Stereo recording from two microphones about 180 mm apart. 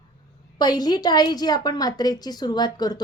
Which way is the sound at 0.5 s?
20° left (ahead or behind).